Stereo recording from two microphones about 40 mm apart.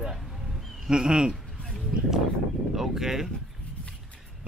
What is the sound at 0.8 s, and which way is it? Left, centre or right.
Speech, right.